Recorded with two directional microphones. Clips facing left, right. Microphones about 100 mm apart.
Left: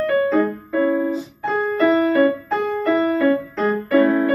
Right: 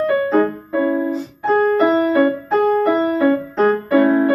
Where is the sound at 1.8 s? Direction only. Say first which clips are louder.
Right 1 dB; 25° right (ahead or behind).